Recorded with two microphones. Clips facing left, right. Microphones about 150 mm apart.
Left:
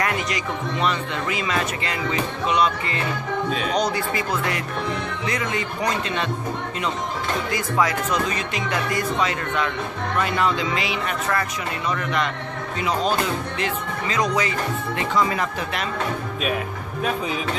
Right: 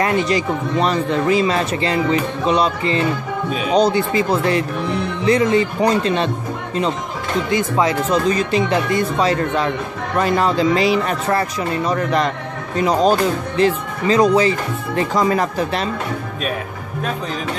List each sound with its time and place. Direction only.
0.0 s speech: 30° right (ahead or behind)
7.5 s speech: 25° right (ahead or behind)